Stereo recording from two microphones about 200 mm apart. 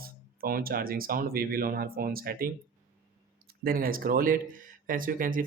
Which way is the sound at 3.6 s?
45° right (ahead or behind).